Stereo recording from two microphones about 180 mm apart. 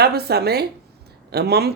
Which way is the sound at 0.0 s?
60° right (ahead or behind).